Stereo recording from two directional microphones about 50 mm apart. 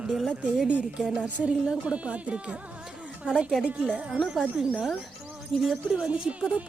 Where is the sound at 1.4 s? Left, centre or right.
Right.